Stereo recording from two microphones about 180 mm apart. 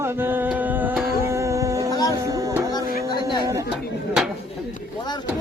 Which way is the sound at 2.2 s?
15° right (ahead or behind).